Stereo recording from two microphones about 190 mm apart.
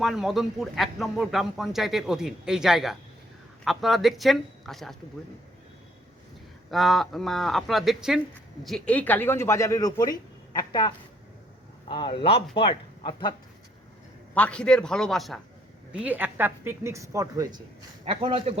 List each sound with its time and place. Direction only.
0.0 s speech: centre (ahead or behind)
6.7 s speech: centre (ahead or behind); by 13.3 s 25° left (ahead or behind)
14.3 s speech: 5° left (ahead or behind); by 17.6 s 20° right (ahead or behind)
18.0 s a man's voice: 30° right (ahead or behind)